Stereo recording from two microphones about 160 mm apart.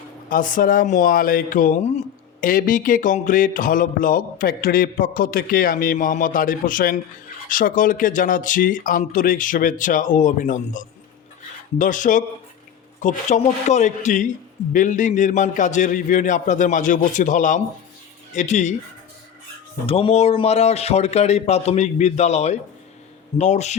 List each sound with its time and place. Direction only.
0.3 s a sound: 60° left (ahead or behind)
13.0 s a man's voice: 50° left (ahead or behind)
19.9 s a man's voice: 35° left (ahead or behind)